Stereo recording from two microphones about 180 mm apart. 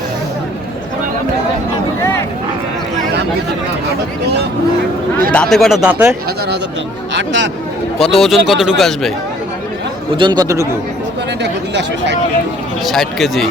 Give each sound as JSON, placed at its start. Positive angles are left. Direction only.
{"t": 5.3, "sound": "speech", "side_deg": 5}
{"t": 7.1, "sound": "speech", "side_deg": -80}
{"t": 8.2, "sound": "speech", "side_deg": 0}
{"t": 10.2, "sound": "speech", "side_deg": -25}
{"t": 11.7, "sound": "speech", "side_deg": -75}
{"t": 12.8, "sound": "speech", "side_deg": 0}